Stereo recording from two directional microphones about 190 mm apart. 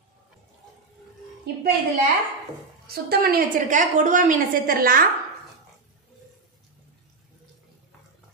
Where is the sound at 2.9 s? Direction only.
55° right (ahead or behind).